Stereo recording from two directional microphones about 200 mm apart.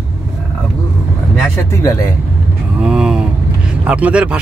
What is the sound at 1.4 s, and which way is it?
Speech, 15° left (ahead or behind).